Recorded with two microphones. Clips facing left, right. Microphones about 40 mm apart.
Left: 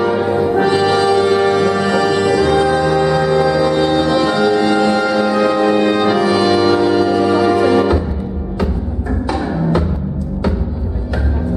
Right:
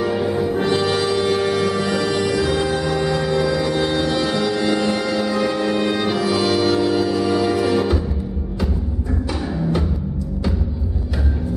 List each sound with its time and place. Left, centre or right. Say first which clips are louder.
0.0 s brass instrument: left 5 dB; centre
7.2 s music: left 6 dB; centre
9.3 s music: left 6 dB; centre